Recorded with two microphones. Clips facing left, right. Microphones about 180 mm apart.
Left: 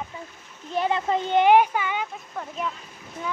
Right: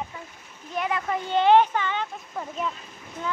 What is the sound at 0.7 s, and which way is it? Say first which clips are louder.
Speech: left 4 dB; 30° left (ahead or behind).